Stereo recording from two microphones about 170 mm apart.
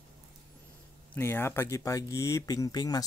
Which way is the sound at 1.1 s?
15° left (ahead or behind).